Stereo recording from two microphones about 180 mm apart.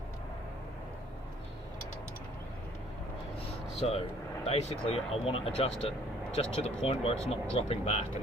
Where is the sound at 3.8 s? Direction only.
35° left (ahead or behind).